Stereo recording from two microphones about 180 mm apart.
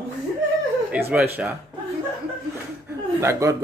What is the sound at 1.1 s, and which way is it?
Speech, 10° right (ahead or behind).